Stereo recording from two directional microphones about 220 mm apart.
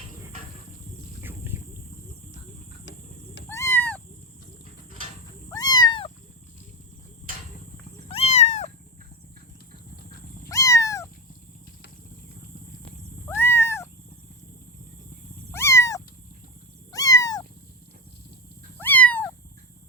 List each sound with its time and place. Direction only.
1.2 s insect: 10° right (ahead or behind)
3.5 s cat: 10° left (ahead or behind)
5.5 s cat: 15° left (ahead or behind)
8.0 s cat: 25° left (ahead or behind)
10.5 s cat: 15° left (ahead or behind)
13.2 s cat: 10° left (ahead or behind)
15.5 s cat: 10° left (ahead or behind)
18.8 s cat: 5° left (ahead or behind)